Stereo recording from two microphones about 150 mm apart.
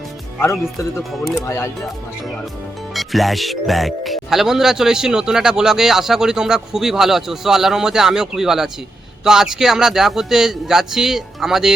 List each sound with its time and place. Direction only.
0.3 s speech: 15° left (ahead or behind)
2.9 s speech: centre (ahead or behind)